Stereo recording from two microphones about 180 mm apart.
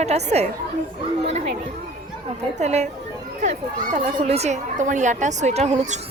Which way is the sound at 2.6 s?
40° right (ahead or behind).